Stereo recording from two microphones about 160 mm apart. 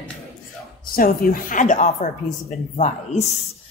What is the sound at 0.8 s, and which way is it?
A woman's voice, 65° left (ahead or behind).